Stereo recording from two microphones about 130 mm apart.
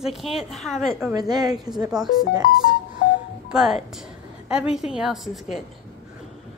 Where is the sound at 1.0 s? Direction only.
30° right (ahead or behind).